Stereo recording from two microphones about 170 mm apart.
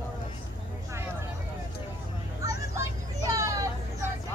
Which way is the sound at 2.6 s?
20° right (ahead or behind).